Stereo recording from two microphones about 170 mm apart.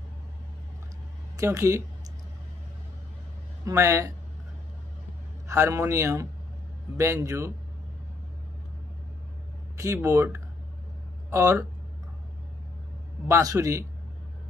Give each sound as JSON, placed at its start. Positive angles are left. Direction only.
{"t": 1.3, "sound": "speech", "side_deg": -20}
{"t": 3.6, "sound": "a man's voice", "side_deg": -15}
{"t": 5.5, "sound": "a man's voice", "side_deg": -15}
{"t": 9.8, "sound": "a man's voice", "side_deg": -15}
{"t": 13.3, "sound": "a man's voice", "side_deg": -20}